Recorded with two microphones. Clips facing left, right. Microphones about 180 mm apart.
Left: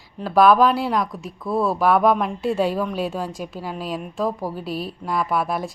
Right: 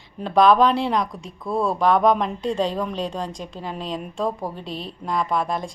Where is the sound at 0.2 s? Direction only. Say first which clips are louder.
Left 1 dB; 5° left (ahead or behind).